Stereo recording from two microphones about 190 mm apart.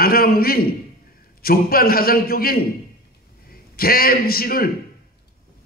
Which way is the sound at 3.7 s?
50° left (ahead or behind).